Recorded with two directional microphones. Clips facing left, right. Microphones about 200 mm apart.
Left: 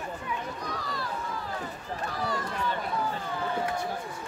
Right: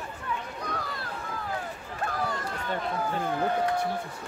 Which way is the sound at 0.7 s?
55° right (ahead or behind).